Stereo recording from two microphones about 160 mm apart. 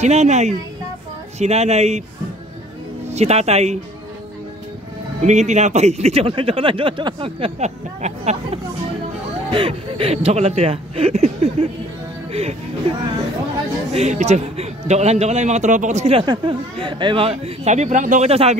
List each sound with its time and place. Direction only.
0.0 s a man's voice: 45° right (ahead or behind)
3.1 s speech: 40° right (ahead or behind)
5.2 s speech: 45° right (ahead or behind)
9.5 s speech: 35° right (ahead or behind)
13.9 s a man's voice: 45° right (ahead or behind)
18.3 s speech: 40° right (ahead or behind)